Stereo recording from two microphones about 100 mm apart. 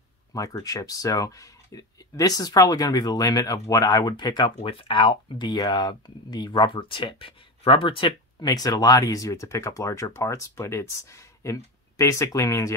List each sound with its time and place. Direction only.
0.3 s speech: 35° left (ahead or behind)
4.6 s speech: 65° left (ahead or behind)
8.4 s speech: 40° left (ahead or behind)